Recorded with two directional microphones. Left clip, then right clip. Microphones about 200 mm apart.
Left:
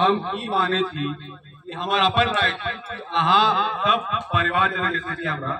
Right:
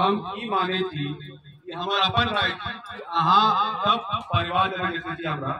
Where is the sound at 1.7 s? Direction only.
30° left (ahead or behind).